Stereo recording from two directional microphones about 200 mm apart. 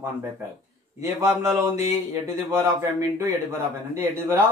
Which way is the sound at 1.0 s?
15° right (ahead or behind).